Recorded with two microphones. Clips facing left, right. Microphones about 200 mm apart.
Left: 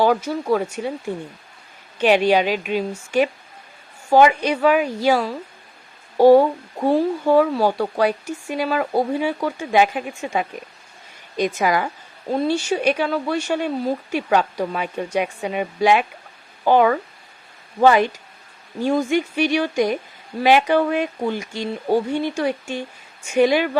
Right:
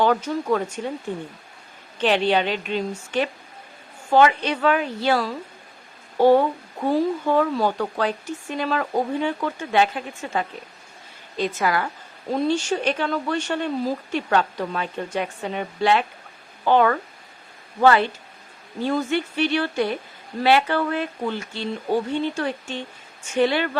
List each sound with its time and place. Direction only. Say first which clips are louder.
0.0 s speech: left 2 dB; 10° left (ahead or behind)
2.0 s speech: left 4 dB; 10° left (ahead or behind)